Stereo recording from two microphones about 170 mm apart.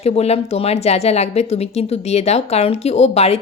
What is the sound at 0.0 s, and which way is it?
Speech, 40° left (ahead or behind).